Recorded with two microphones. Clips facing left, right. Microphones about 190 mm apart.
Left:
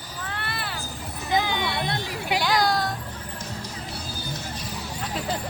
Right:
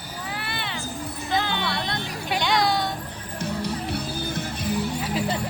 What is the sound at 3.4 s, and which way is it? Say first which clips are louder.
Music: right 12 dB; 60° right (ahead or behind).